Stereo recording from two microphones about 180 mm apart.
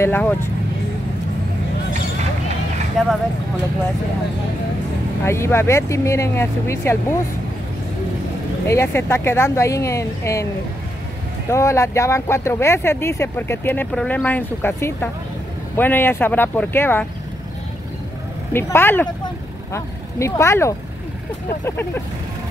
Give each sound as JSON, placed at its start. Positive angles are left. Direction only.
{"t": 0.0, "sound": "speech", "side_deg": 10}
{"t": 3.0, "sound": "speech", "side_deg": 0}
{"t": 5.2, "sound": "speech", "side_deg": 15}
{"t": 8.6, "sound": "speech", "side_deg": 15}
{"t": 11.5, "sound": "speech", "side_deg": 15}
{"t": 18.5, "sound": "speech", "side_deg": 15}